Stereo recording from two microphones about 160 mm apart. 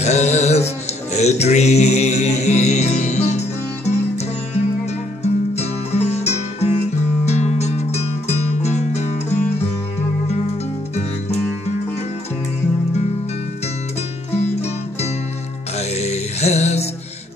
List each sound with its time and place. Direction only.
0.0 s music: 45° left (ahead or behind)
5.2 s music: 40° left (ahead or behind)
14.3 s music: 40° left (ahead or behind)